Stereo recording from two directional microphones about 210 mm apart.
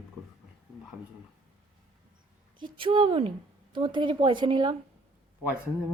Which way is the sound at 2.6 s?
20° right (ahead or behind).